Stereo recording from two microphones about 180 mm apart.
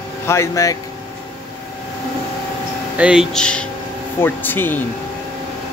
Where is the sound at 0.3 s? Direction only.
15° left (ahead or behind).